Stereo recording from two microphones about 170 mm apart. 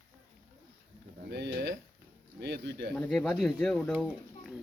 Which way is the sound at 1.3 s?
75° right (ahead or behind).